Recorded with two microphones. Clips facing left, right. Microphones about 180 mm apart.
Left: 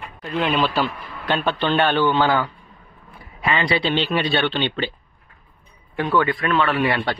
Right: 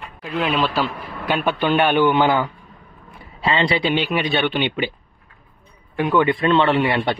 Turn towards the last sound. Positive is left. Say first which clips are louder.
# right 3 dB
turn(degrees=-25)  # may be behind; listen again after turning